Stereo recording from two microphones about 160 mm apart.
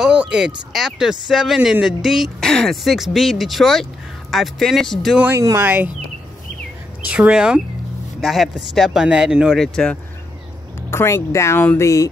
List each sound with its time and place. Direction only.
0.0 s a sound: 5° right (ahead or behind)
0.7 s speech: 5° right (ahead or behind)
5.3 s speech: 15° right (ahead or behind)
7.1 s speech: 5° right (ahead or behind)
10.9 s speech: 15° left (ahead or behind)